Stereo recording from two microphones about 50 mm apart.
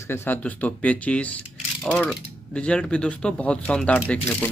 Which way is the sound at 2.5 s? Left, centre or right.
Left.